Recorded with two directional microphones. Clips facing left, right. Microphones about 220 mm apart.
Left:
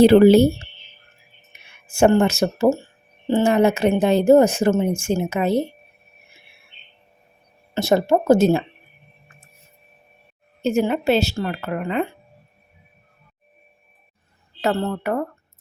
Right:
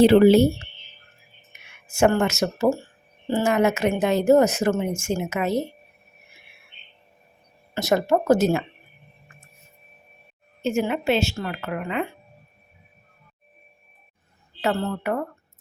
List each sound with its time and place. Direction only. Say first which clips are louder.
0.0 s a woman's voice: left 3 dB; 40° left (ahead or behind)
1.5 s a sound: left 2 dB; 30° left (ahead or behind)
1.9 s a woman's voice: left 4 dB; 30° left (ahead or behind)
7.7 s speech: left 3 dB; 30° left (ahead or behind)
10.6 s a woman's voice: left 4 dB; 35° left (ahead or behind)
14.6 s a woman's voice: left 3 dB; 35° left (ahead or behind)